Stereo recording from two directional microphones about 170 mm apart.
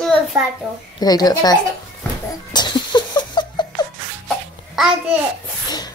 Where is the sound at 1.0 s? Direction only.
20° left (ahead or behind).